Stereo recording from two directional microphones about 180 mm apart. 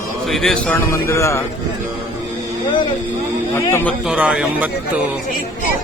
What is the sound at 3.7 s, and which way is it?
Speech, 15° left (ahead or behind).